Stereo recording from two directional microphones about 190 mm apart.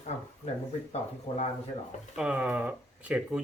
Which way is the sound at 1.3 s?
35° left (ahead or behind).